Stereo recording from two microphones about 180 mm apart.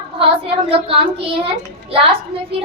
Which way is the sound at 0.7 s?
30° right (ahead or behind).